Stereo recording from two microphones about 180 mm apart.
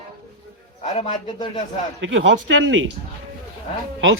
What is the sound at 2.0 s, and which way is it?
Speech, 90° right.